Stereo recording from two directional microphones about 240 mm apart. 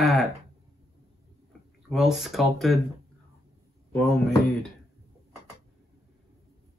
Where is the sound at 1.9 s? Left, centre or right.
Centre.